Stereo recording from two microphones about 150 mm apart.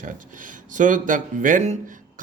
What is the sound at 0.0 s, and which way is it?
Speech, 60° right (ahead or behind).